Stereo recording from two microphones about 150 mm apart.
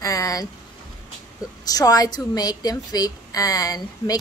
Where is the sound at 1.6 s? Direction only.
25° left (ahead or behind).